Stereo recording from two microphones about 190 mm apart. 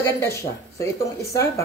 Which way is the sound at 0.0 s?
15° left (ahead or behind).